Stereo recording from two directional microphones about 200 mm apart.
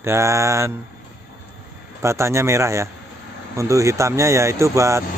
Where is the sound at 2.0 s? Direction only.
15° right (ahead or behind).